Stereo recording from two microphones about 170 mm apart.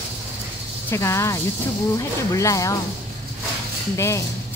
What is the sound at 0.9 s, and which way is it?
A woman's voice, 15° left (ahead or behind).